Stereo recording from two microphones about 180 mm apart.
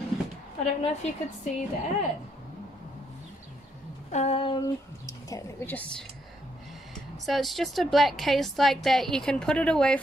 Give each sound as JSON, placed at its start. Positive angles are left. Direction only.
{"t": 0.7, "sound": "a woman's voice", "side_deg": 40}
{"t": 4.1, "sound": "speech", "side_deg": 35}
{"t": 7.2, "sound": "a woman's voice", "side_deg": 0}